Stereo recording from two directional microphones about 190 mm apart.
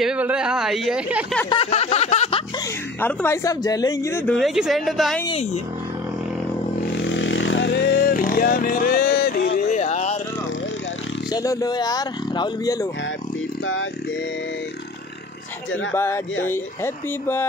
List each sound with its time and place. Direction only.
0.0 s a man's voice: 5° right (ahead or behind)
1.5 s a sound: 30° left (ahead or behind)
3.0 s speech: 10° left (ahead or behind)
4.4 s a man's voice: centre (ahead or behind)
5.3 s speech: 35° left (ahead or behind)
7.0 s vehicle: 75° left (ahead or behind); by 9.8 s 50° left (ahead or behind)
9.8 s a sound: 35° left (ahead or behind)
11.3 s speech: 20° left (ahead or behind)
15.9 s speech: 10° left (ahead or behind)